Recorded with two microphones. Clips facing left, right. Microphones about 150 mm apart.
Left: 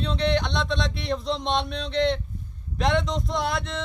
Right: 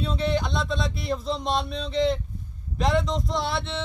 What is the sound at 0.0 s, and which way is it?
Speech, 5° right (ahead or behind).